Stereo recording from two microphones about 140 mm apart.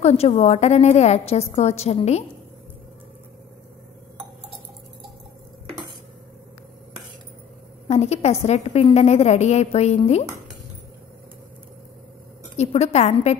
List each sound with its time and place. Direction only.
0.0 s a woman's voice: 50° left (ahead or behind)
7.9 s a woman's voice: 50° left (ahead or behind)
12.5 s a woman's voice: 50° left (ahead or behind)